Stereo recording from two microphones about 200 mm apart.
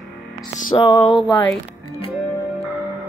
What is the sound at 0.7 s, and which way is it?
Speech, 15° left (ahead or behind).